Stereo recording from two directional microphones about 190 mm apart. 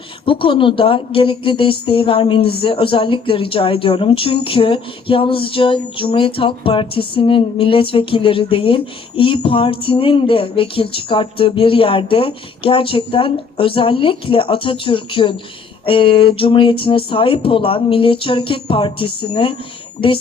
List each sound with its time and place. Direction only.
0.3 s speech: 25° left (ahead or behind)